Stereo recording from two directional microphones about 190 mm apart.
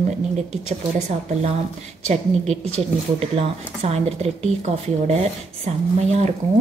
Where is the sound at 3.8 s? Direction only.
35° right (ahead or behind).